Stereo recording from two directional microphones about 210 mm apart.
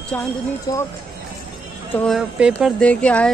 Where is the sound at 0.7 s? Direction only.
20° left (ahead or behind).